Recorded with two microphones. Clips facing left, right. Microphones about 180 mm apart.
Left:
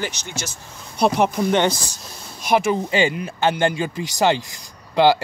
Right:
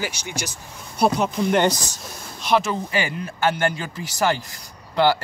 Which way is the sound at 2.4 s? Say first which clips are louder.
Left 2 dB; 10° left (ahead or behind).